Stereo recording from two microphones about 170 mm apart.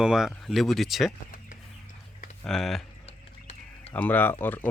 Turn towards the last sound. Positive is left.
turn(degrees=10)  # may be behind; listen again after turning